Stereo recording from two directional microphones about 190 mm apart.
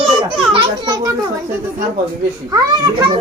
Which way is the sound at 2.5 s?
20° right (ahead or behind).